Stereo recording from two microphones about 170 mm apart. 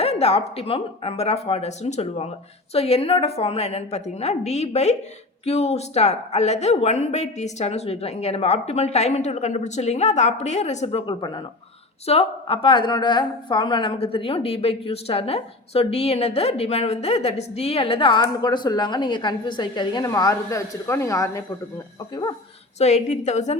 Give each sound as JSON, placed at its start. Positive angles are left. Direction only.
{"t": 0.0, "sound": "a woman's voice", "side_deg": 35}
{"t": 22.8, "sound": "a woman's voice", "side_deg": 40}